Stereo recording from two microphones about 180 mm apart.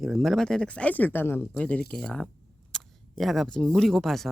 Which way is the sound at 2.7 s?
5° left (ahead or behind).